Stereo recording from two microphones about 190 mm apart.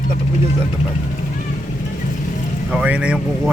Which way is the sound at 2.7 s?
5° right (ahead or behind).